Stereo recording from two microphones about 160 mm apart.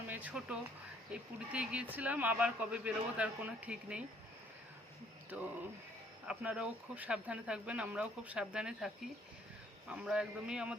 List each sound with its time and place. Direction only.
0.1 s a sound: 10° right (ahead or behind)
1.1 s speech: 5° right (ahead or behind)
5.3 s speech: 10° right (ahead or behind)
9.9 s a man's voice: 5° right (ahead or behind)